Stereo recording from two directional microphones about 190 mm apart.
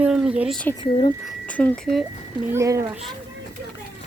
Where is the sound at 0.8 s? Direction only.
25° left (ahead or behind).